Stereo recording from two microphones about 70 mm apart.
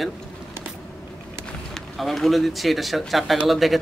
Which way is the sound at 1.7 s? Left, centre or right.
Centre.